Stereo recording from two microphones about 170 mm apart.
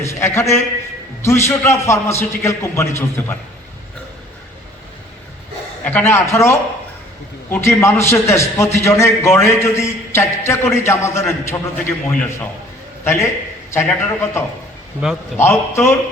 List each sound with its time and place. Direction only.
0.0 s a man's voice: 15° left (ahead or behind)
5.8 s a man's voice: 10° left (ahead or behind)
15.0 s a man's voice: 5° right (ahead or behind)
15.4 s a man's voice: 15° left (ahead or behind)